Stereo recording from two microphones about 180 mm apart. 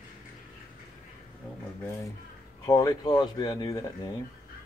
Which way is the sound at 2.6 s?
20° left (ahead or behind).